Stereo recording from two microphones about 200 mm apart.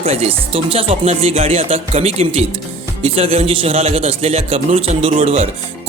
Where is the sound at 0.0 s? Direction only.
30° right (ahead or behind).